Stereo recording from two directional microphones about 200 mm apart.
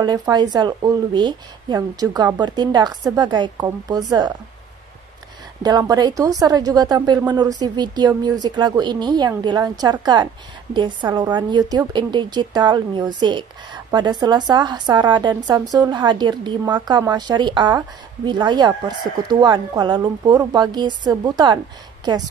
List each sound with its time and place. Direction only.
0.0 s a woman's voice: 20° right (ahead or behind)
5.6 s a woman's voice: 20° right (ahead or behind)